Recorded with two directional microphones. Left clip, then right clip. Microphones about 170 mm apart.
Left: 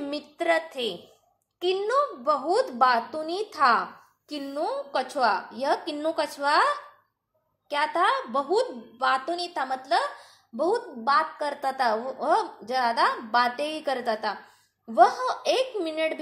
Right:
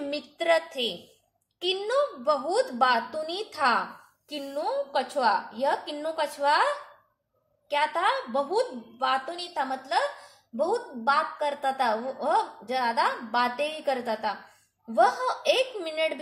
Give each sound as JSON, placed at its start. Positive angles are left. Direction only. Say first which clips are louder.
{"t": 0.0, "sound": "a woman's voice", "louder": "even", "side_deg": 10}
{"t": 4.4, "sound": "speech", "louder": "even", "side_deg": 30}
{"t": 7.7, "sound": "a woman's voice", "louder": "left 1 dB", "side_deg": 25}